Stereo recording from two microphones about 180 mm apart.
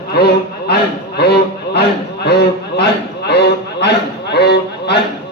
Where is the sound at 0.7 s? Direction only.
65° left (ahead or behind).